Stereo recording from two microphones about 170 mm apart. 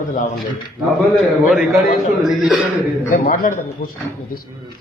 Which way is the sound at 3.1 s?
55° left (ahead or behind).